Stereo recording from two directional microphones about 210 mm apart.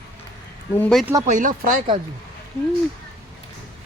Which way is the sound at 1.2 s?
40° right (ahead or behind).